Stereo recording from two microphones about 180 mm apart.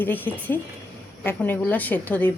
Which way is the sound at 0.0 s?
10° left (ahead or behind).